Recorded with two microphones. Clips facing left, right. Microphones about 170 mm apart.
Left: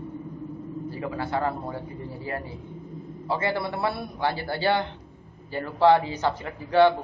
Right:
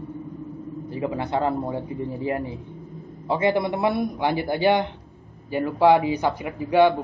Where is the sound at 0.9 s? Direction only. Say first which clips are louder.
Right 4 dB; 20° right (ahead or behind).